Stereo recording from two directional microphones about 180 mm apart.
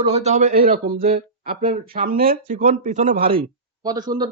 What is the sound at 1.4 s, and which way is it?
Speech, 50° right (ahead or behind).